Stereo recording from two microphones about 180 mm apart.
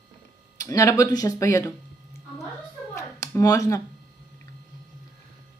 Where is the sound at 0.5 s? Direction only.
20° left (ahead or behind).